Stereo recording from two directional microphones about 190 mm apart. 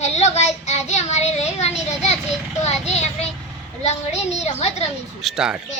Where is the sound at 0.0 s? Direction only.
35° left (ahead or behind).